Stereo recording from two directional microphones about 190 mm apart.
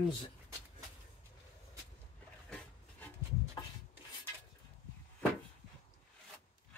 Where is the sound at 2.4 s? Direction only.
5° left (ahead or behind).